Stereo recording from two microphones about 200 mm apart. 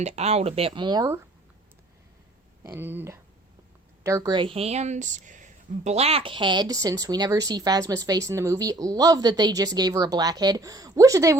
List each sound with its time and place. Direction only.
0.0 s speech: 35° right (ahead or behind); by 1.2 s 20° right (ahead or behind)
2.6 s speech: 10° right (ahead or behind)